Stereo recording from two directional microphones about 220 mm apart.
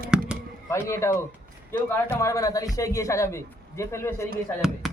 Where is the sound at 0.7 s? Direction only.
10° left (ahead or behind).